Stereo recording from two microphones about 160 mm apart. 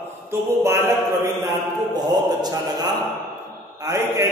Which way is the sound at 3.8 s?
20° right (ahead or behind).